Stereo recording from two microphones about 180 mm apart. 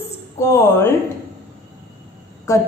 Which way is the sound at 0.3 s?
15° left (ahead or behind).